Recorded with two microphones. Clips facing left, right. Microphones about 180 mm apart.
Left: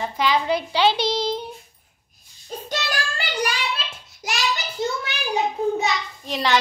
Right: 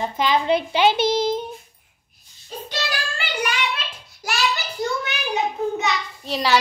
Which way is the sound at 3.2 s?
35° left (ahead or behind).